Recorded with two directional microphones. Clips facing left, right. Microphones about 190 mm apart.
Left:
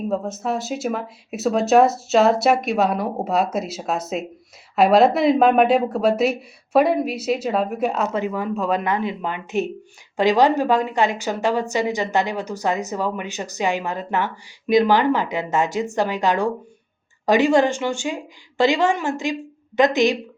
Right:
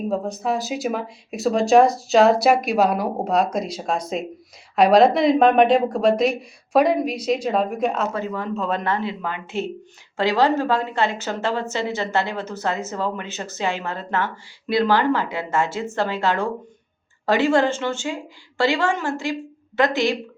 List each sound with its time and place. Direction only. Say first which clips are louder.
0.1 s a woman's voice: right 1 dB; centre (ahead or behind); by 20.1 s 20° left (ahead or behind)